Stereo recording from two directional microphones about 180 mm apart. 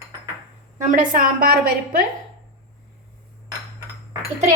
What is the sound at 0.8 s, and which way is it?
Speech, 50° right (ahead or behind).